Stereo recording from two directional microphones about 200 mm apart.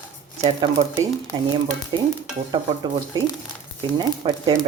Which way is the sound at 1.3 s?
20° right (ahead or behind).